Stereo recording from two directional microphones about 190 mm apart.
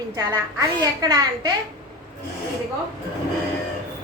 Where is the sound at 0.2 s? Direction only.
20° right (ahead or behind).